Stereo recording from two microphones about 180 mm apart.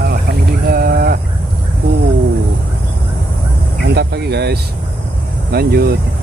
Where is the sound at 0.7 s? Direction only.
55° right (ahead or behind).